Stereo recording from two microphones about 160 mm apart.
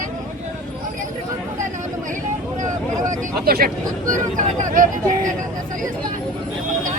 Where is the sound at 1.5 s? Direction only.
50° right (ahead or behind).